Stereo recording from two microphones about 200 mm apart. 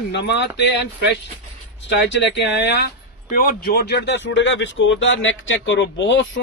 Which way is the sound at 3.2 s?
45° left (ahead or behind).